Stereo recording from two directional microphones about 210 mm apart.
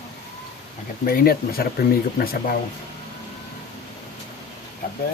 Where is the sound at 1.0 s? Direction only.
45° left (ahead or behind).